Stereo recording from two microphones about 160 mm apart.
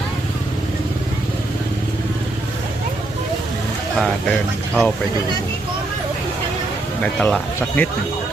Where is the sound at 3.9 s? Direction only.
5° left (ahead or behind).